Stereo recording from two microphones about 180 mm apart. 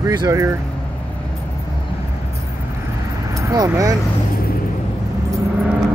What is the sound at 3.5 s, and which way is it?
Speech, 20° right (ahead or behind).